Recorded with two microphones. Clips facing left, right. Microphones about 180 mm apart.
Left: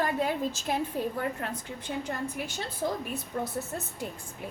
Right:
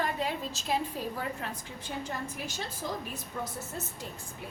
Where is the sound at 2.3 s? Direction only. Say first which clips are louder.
Left 3 dB; 60° left (ahead or behind).